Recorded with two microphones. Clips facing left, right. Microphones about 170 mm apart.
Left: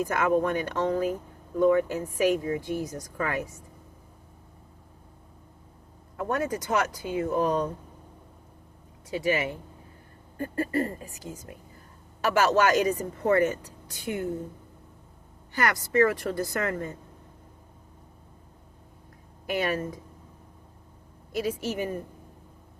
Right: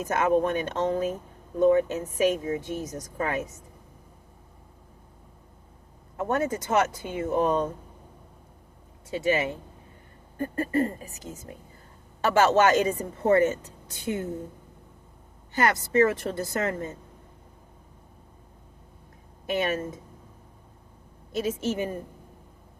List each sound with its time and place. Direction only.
0.0 s speech: 20° right (ahead or behind)
6.1 s speech: 25° right (ahead or behind)
9.0 s speech: 25° right (ahead or behind)
15.5 s speech: 25° right (ahead or behind)
19.5 s speech: 20° right (ahead or behind)
21.3 s speech: 25° right (ahead or behind)